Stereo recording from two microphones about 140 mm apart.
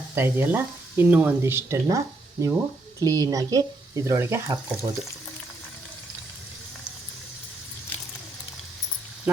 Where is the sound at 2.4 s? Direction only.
20° right (ahead or behind).